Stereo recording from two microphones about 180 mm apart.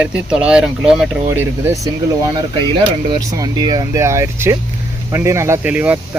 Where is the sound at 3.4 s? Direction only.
20° right (ahead or behind).